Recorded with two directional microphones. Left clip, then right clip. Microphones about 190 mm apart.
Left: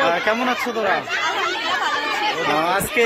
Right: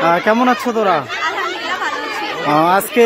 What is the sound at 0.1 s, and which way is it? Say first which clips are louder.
Speech: right 6 dB; 50° right (ahead or behind).